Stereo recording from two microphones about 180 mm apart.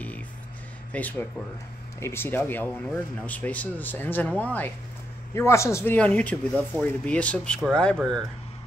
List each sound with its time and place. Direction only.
0.9 s speech: 10° left (ahead or behind)